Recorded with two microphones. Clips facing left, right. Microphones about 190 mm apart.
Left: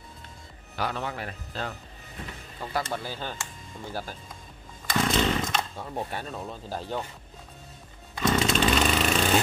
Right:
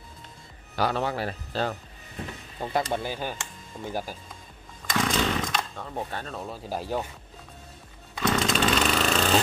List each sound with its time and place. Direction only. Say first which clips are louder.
0.7 s a man's voice: right 5 dB; 35° right (ahead or behind)
2.6 s speech: right 4 dB; 20° right (ahead or behind)
4.9 s chainsaw: left 1 dB; 5° left (ahead or behind)
6.7 s speech: right 3 dB; 10° right (ahead or behind)
8.1 s chainsaw: left 1 dB; 5° left (ahead or behind)